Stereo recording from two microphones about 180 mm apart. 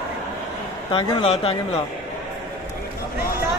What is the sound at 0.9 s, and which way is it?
Speech, 30° left (ahead or behind).